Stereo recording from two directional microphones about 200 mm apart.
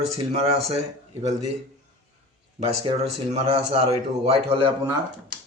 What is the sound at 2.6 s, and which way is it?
A man's voice, 30° right (ahead or behind).